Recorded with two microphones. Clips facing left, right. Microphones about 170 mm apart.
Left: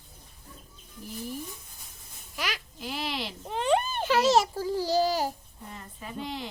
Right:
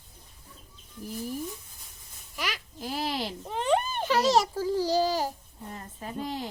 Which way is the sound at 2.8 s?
40° right (ahead or behind).